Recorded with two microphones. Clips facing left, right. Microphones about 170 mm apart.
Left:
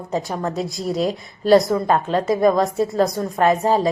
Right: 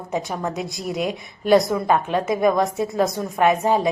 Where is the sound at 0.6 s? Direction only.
Centre (ahead or behind).